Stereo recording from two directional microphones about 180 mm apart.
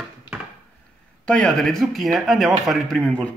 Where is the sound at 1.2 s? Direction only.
5° left (ahead or behind).